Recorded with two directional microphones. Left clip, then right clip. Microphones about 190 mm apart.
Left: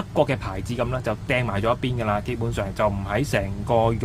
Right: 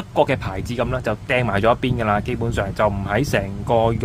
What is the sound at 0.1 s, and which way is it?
A man's voice, 15° right (ahead or behind).